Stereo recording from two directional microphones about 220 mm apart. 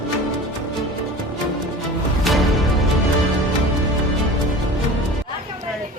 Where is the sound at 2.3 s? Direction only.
Centre (ahead or behind).